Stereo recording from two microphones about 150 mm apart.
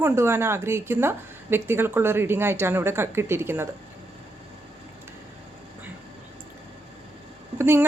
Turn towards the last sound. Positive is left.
turn(degrees=-15)  # may be behind; listen again after turning